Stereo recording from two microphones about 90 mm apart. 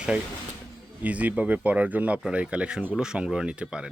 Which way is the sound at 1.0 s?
15° right (ahead or behind).